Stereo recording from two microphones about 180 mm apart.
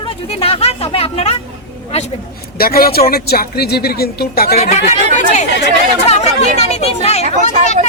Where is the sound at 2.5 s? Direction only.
55° left (ahead or behind).